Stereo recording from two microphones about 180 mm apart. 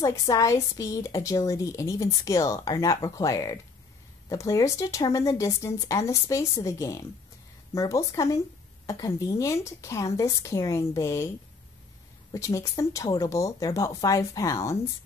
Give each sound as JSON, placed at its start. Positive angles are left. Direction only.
{"t": 0.0, "sound": "a woman's voice", "side_deg": 20}
{"t": 12.3, "sound": "speech", "side_deg": 15}